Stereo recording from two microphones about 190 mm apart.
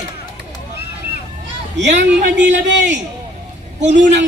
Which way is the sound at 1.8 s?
65° right (ahead or behind).